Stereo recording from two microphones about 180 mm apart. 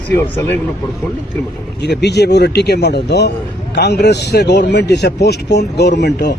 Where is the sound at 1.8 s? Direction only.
70° left (ahead or behind).